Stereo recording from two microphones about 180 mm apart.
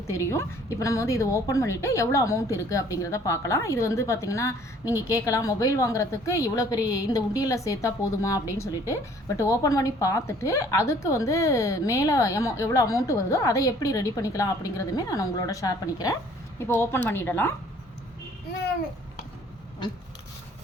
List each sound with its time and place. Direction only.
0.1 s a woman's voice: 15° left (ahead or behind)